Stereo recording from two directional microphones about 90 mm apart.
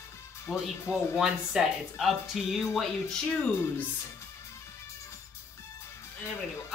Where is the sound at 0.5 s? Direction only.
15° left (ahead or behind).